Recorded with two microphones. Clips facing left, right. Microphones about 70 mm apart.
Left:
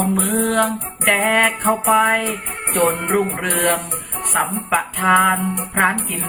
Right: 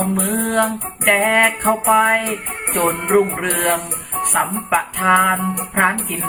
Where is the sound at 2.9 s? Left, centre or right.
Centre.